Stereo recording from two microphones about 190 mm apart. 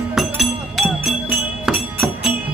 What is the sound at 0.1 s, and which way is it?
Music, centre (ahead or behind).